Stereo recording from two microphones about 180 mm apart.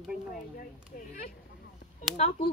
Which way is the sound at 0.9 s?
55° left (ahead or behind).